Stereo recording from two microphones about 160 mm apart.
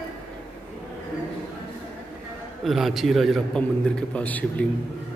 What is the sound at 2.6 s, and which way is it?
A man's voice, centre (ahead or behind).